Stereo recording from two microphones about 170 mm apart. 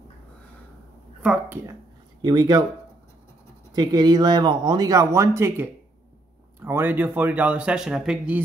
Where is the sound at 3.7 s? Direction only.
25° right (ahead or behind); by 8.4 s 5° right (ahead or behind).